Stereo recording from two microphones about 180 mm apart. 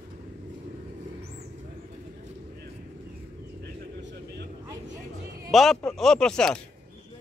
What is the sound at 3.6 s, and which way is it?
Vehicle, 70° right (ahead or behind).